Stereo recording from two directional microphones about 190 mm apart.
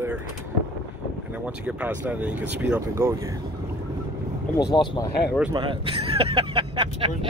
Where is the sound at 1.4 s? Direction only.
5° right (ahead or behind).